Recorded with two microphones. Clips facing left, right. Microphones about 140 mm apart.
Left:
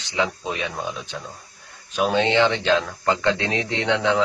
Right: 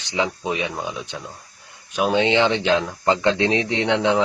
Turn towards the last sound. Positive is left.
turn(degrees=-20)  # may be behind; listen again after turning